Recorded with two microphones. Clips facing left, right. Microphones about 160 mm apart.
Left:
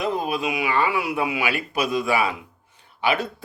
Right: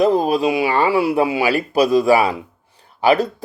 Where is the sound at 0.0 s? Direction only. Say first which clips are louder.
Right 9 dB; 35° right (ahead or behind).